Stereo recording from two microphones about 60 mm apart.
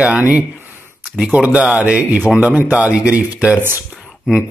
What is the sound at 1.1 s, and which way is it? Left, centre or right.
Speech, right.